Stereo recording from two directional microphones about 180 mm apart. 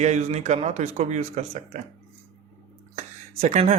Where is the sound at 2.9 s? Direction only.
40° right (ahead or behind).